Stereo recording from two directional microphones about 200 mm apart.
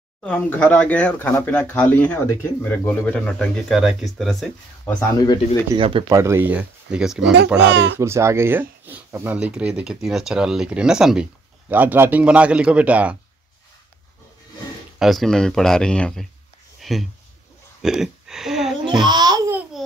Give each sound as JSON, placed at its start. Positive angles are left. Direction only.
{"t": 0.2, "sound": "speech", "side_deg": 5}
{"t": 5.2, "sound": "speech", "side_deg": 20}
{"t": 5.8, "sound": "speech", "side_deg": -25}
{"t": 6.1, "sound": "speech", "side_deg": -15}
{"t": 7.7, "sound": "speech", "side_deg": -60}
{"t": 8.0, "sound": "a man's voice", "side_deg": -15}
{"t": 15.0, "sound": "speech", "side_deg": 0}
{"t": 16.8, "sound": "a sound", "side_deg": 0}
{"t": 18.9, "sound": "babbling", "side_deg": -20}